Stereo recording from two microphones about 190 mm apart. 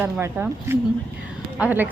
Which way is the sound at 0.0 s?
10° right (ahead or behind).